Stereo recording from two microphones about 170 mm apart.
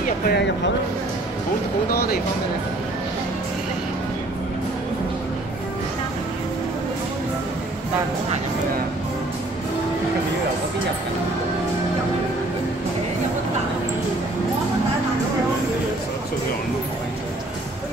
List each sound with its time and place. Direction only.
0.0 s music: 70° left (ahead or behind)
1.9 s speech: 60° left (ahead or behind)